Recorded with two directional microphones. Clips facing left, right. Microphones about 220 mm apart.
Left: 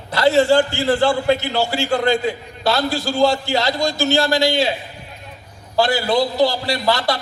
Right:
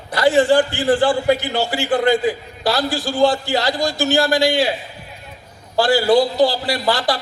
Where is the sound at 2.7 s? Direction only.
20° left (ahead or behind).